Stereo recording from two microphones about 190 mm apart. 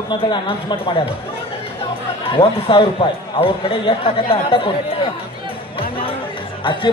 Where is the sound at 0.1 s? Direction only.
25° left (ahead or behind).